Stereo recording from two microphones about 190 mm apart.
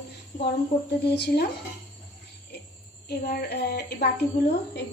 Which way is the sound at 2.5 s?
60° left (ahead or behind).